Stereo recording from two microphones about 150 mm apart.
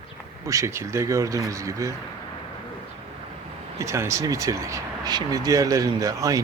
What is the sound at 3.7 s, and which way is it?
Speech, 20° right (ahead or behind).